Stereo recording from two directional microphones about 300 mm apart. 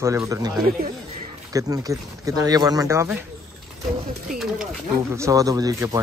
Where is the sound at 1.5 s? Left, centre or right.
Centre.